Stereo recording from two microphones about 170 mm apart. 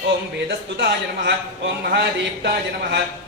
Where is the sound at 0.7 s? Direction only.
80° right.